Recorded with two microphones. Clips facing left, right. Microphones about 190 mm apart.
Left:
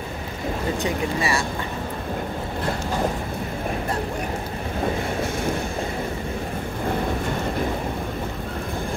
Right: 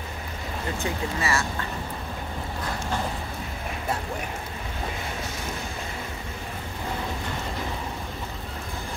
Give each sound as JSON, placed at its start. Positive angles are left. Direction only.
{"t": 0.8, "sound": "speech", "side_deg": 15}